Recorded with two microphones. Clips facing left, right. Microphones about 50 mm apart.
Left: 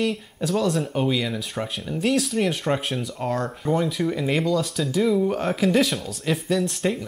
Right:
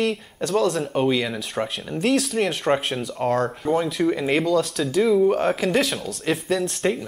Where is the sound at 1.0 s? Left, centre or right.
Centre.